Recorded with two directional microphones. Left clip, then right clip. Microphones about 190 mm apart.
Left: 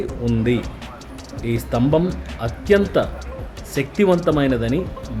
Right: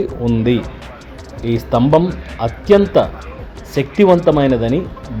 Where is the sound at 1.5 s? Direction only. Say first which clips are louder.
Right 6 dB; 15° right (ahead or behind).